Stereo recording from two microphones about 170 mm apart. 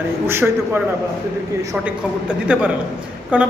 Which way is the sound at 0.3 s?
15° right (ahead or behind).